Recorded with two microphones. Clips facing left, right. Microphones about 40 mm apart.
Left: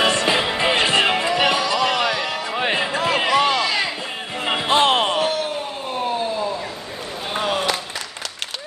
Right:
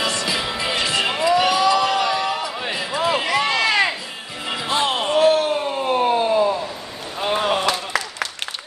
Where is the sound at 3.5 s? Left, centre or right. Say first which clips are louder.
Right 2 dB; right.